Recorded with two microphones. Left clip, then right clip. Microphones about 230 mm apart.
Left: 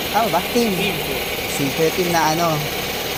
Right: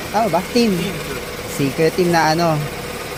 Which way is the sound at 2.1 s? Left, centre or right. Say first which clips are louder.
Right 1 dB; right.